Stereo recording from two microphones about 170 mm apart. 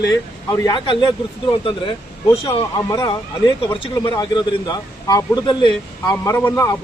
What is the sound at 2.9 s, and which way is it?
A man's voice, 20° left (ahead or behind).